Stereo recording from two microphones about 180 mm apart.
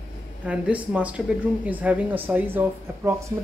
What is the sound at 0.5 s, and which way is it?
Speech, 10° right (ahead or behind).